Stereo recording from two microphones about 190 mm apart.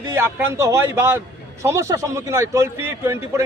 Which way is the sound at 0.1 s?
15° right (ahead or behind).